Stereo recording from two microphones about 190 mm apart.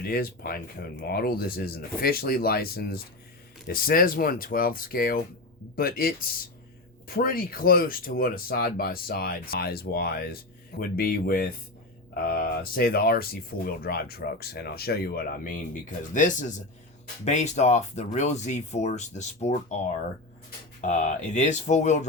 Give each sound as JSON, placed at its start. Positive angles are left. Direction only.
{"t": 0.0, "sound": "speech", "side_deg": 50}
{"t": 16.1, "sound": "speech", "side_deg": 40}
{"t": 20.8, "sound": "speech", "side_deg": 40}